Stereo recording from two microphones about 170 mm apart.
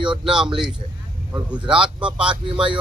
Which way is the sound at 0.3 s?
5° right (ahead or behind).